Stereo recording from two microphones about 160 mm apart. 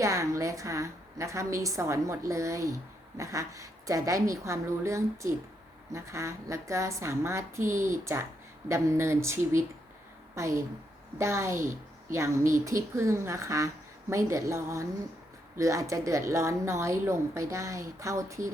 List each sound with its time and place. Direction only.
0.0 s a woman's voice: 20° right (ahead or behind)